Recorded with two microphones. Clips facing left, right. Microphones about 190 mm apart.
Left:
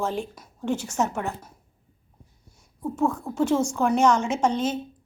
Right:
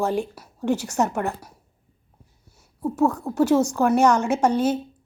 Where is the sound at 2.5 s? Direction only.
5° right (ahead or behind).